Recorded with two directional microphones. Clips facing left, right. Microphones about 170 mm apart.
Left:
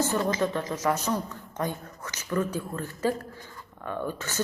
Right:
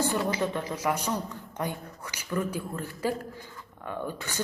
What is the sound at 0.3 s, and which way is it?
Speech, 15° right (ahead or behind).